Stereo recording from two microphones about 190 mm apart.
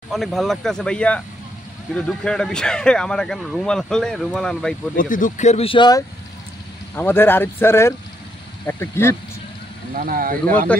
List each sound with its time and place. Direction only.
0.1 s a man's voice: centre (ahead or behind)
4.9 s speech: 45° left (ahead or behind); by 6.0 s 20° left (ahead or behind)
7.0 s speech: 10° left (ahead or behind)
9.9 s speech: 50° right (ahead or behind)
10.7 s speech: 5° left (ahead or behind)